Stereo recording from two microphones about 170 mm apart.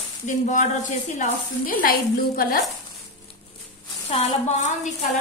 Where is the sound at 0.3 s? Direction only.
50° left (ahead or behind).